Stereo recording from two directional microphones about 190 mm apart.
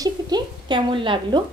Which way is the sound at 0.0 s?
25° right (ahead or behind).